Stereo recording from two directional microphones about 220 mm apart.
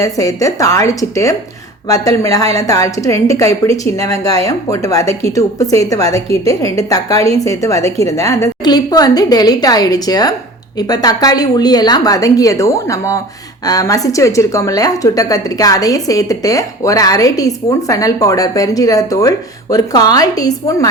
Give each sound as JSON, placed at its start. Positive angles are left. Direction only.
{"t": 0.0, "sound": "a woman's voice", "side_deg": 15}